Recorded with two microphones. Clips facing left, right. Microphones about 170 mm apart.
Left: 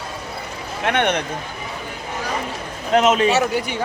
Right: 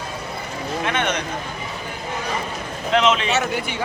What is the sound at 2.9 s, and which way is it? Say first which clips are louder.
Speech: left 3 dB; 45° left (ahead or behind).